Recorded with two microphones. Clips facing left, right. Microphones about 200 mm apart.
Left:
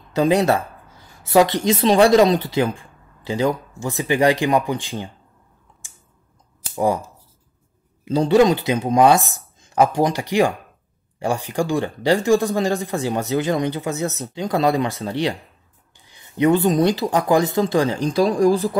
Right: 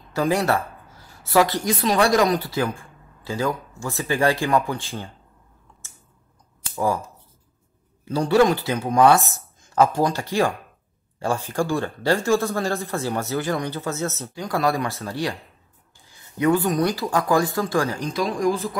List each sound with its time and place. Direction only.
0.1 s speech: 20° left (ahead or behind)
5.7 s scissors: 15° left (ahead or behind)
6.7 s speech: 20° left (ahead or behind)
8.0 s speech: 20° left (ahead or behind)